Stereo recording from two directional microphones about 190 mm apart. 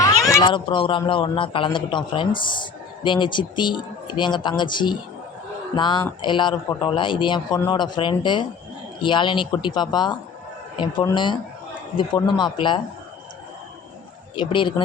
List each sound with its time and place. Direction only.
0.0 s speech: 20° left (ahead or behind)
14.3 s speech: 25° left (ahead or behind)